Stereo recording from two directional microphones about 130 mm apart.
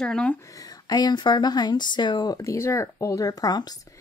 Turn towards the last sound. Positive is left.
turn(degrees=30)  # may be behind; listen again after turning